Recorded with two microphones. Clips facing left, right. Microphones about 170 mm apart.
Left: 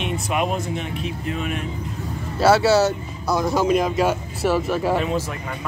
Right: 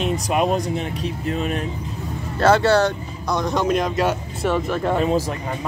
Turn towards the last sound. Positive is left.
turn(degrees=-40)  # may be behind; listen again after turning